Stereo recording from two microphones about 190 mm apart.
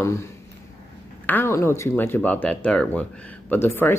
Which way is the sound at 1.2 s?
10° left (ahead or behind).